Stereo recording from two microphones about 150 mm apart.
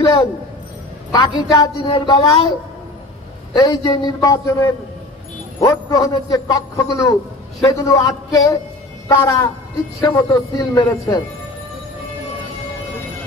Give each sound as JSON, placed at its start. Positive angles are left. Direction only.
{"t": 0.0, "sound": "a man's voice", "side_deg": 20}
{"t": 3.6, "sound": "a man's voice", "side_deg": 25}